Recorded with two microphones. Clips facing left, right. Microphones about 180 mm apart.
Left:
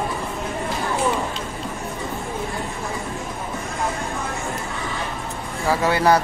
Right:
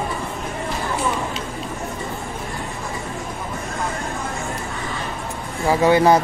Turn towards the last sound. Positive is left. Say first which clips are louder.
# right 3 dB
turn(degrees=-20)  # may be behind; listen again after turning